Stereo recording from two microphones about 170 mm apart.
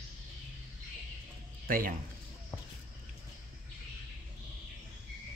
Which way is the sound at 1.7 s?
55° right (ahead or behind).